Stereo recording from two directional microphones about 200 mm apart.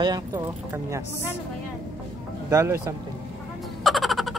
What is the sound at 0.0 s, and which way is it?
A woman's voice, 20° right (ahead or behind).